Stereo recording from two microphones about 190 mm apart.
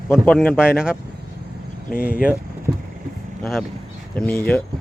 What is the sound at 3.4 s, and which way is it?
Speech, 5° left (ahead or behind).